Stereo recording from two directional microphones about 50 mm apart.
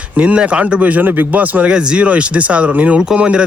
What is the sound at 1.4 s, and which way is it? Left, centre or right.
Speech, right.